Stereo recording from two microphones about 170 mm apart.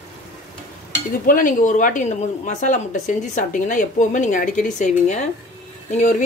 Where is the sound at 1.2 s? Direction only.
50° left (ahead or behind).